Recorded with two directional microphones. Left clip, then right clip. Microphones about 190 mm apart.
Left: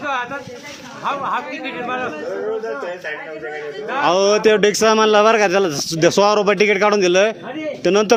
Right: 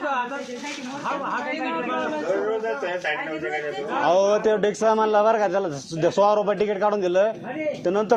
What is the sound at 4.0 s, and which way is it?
A man's voice, 45° left (ahead or behind).